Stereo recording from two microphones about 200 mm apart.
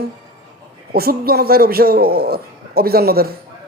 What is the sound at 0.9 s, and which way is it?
Speech, 50° right (ahead or behind).